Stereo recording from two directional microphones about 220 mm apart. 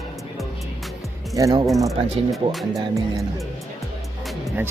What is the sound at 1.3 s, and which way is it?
Speech, 15° right (ahead or behind).